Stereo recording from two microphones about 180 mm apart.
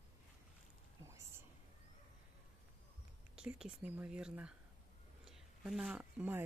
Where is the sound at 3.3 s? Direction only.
5° right (ahead or behind).